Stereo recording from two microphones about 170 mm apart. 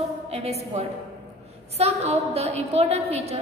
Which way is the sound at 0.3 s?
35° right (ahead or behind).